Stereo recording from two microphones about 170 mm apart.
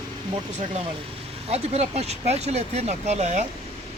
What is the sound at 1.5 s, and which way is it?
Speech, 40° right (ahead or behind).